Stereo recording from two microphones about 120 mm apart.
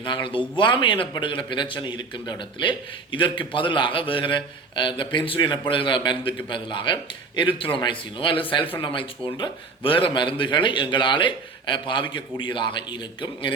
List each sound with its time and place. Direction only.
0.0 s a man's voice: 45° left (ahead or behind)